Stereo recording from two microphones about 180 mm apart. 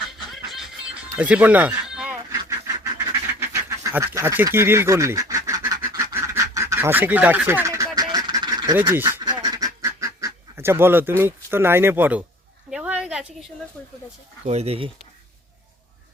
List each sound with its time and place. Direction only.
0.3 s music: centre (ahead or behind)
1.1 s speech: 10° right (ahead or behind)
2.4 s duck: 15° right (ahead or behind)
7.9 s goose: 20° right (ahead or behind)
9.2 s duck: 20° right (ahead or behind)
11.2 s speech: 15° right (ahead or behind)
12.7 s a sound: 5° right (ahead or behind)
13.8 s speech: 5° left (ahead or behind)
14.4 s speech: 35° right (ahead or behind)